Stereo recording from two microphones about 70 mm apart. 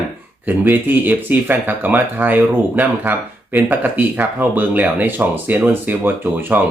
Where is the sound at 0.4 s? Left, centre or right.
Right.